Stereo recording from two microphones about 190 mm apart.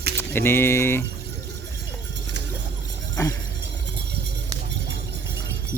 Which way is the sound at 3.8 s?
60° right (ahead or behind).